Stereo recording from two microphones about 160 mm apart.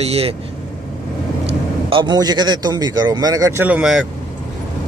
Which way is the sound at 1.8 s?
30° right (ahead or behind).